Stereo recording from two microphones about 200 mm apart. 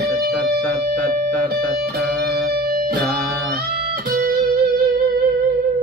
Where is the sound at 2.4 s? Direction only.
50° right (ahead or behind).